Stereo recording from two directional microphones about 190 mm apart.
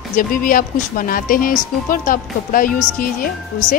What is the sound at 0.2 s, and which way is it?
Speech, 45° left (ahead or behind).